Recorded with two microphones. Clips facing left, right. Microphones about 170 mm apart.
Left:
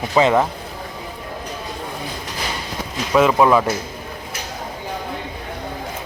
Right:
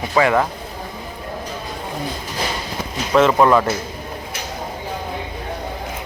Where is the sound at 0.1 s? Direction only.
20° left (ahead or behind).